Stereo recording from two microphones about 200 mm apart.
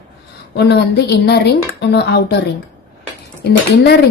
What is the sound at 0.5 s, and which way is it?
A woman's voice, 55° left (ahead or behind).